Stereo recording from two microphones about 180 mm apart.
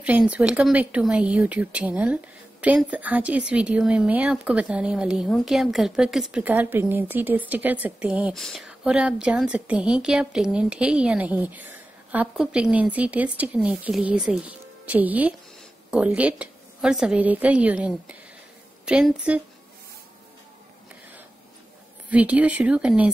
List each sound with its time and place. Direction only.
0.0 s speech: 5° right (ahead or behind)
22.1 s speech: 5° right (ahead or behind)